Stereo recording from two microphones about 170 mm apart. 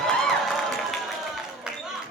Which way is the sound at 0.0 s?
Centre (ahead or behind).